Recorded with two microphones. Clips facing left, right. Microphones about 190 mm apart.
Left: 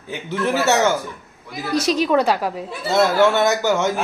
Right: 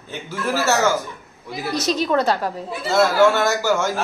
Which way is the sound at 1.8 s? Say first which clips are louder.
Left 1 dB; 10° left (ahead or behind).